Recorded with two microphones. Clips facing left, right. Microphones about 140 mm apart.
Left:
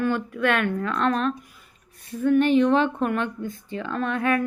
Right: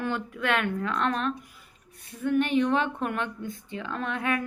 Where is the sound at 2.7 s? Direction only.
30° left (ahead or behind).